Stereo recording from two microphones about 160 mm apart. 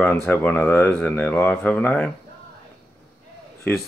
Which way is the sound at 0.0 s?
15° left (ahead or behind).